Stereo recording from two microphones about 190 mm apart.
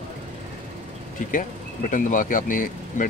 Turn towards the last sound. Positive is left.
turn(degrees=45)  # may be behind; listen again after turning